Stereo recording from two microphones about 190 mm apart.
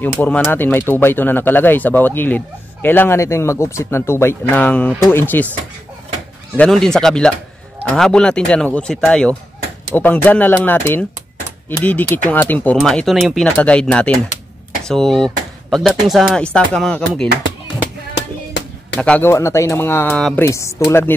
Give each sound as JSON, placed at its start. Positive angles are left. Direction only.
{"t": 0.0, "sound": "speech", "side_deg": 10}
{"t": 6.5, "sound": "speech", "side_deg": 5}
{"t": 18.6, "sound": "a sound", "side_deg": 65}
{"t": 18.9, "sound": "speech", "side_deg": 5}
{"t": 20.2, "sound": "speech", "side_deg": 0}
{"t": 20.4, "sound": "speech", "side_deg": 15}